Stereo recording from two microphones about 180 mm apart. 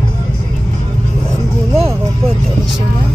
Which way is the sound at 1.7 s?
35° right (ahead or behind).